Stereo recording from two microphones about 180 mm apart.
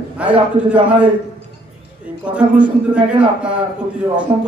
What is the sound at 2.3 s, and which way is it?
A man's voice, 5° right (ahead or behind).